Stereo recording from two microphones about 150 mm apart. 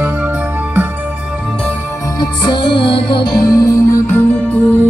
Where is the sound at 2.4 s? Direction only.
30° left (ahead or behind).